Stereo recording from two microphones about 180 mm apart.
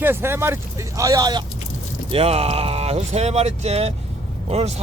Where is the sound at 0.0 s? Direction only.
10° right (ahead or behind).